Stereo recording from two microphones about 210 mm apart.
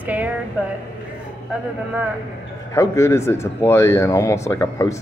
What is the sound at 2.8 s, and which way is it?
Speech, 15° left (ahead or behind).